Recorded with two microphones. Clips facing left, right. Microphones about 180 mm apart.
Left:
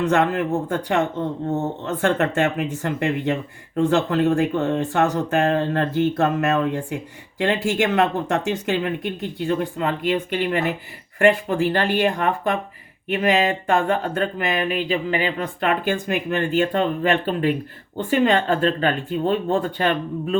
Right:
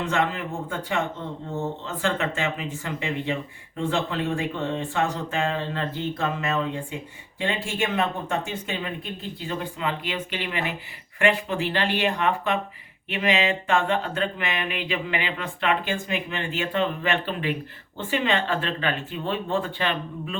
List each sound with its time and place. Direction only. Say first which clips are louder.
0.0 s speech: left 6 dB; 50° left (ahead or behind)
0.7 s speech: left 6 dB; 65° left (ahead or behind)
4.1 s speech: left 8 dB; 45° left (ahead or behind)
4.9 s speech: left 6 dB; 70° left (ahead or behind); by 20.3 s 45° left (ahead or behind)